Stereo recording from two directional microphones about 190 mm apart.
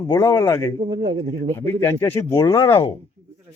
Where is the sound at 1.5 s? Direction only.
10° left (ahead or behind).